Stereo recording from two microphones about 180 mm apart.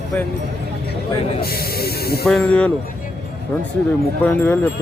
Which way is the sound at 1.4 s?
60° left (ahead or behind).